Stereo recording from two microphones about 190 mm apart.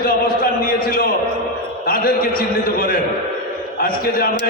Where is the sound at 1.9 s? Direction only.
50° left (ahead or behind).